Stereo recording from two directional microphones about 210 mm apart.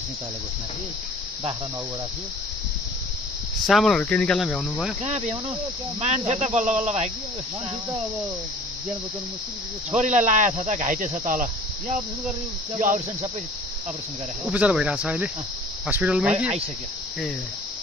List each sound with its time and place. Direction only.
3.6 s speech: centre (ahead or behind)
5.0 s speech: 30° right (ahead or behind)
9.8 s speech: 35° right (ahead or behind)
12.7 s speech: 35° right (ahead or behind)
14.5 s speech: 5° right (ahead or behind)